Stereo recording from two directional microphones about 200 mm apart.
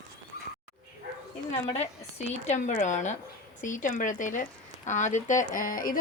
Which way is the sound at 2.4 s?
35° left (ahead or behind).